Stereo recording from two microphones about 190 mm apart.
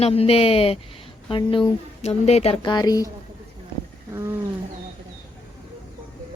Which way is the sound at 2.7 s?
20° left (ahead or behind).